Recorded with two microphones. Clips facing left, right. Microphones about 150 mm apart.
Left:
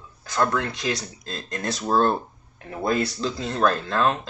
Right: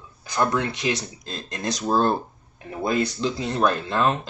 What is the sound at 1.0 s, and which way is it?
Speech, centre (ahead or behind).